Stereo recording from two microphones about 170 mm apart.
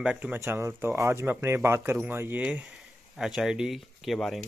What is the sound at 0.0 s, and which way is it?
Speech, 10° right (ahead or behind).